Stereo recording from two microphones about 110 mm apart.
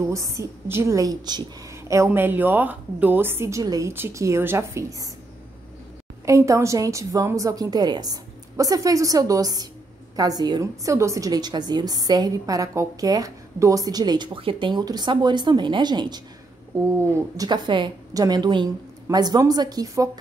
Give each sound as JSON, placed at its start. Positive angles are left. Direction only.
{"t": 0.0, "sound": "a woman's voice", "side_deg": -30}
{"t": 2.1, "sound": "a woman's voice", "side_deg": -20}
{"t": 6.2, "sound": "a woman's voice", "side_deg": -30}
{"t": 17.5, "sound": "a woman's voice", "side_deg": -45}
{"t": 18.1, "sound": "a woman's voice", "side_deg": -35}